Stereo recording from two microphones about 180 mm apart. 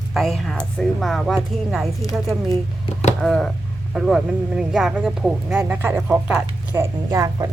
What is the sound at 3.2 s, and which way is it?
Speech, 5° left (ahead or behind).